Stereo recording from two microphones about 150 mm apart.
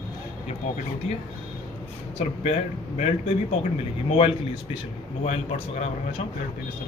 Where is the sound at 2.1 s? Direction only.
45° left (ahead or behind).